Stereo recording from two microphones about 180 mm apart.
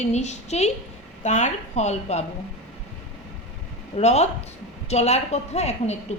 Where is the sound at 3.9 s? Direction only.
35° left (ahead or behind).